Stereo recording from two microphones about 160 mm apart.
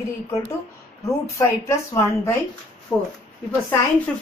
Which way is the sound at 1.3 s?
15° left (ahead or behind).